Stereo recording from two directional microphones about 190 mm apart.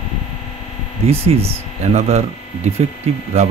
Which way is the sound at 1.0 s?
30° right (ahead or behind).